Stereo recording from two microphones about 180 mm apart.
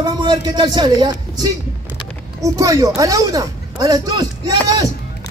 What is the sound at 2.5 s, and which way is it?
Speech, 20° right (ahead or behind).